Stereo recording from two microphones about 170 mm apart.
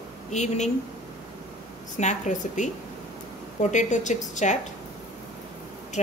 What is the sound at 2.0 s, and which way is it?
Speech, 45° left (ahead or behind).